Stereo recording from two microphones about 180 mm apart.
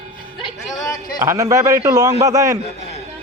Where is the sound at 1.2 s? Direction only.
15° right (ahead or behind).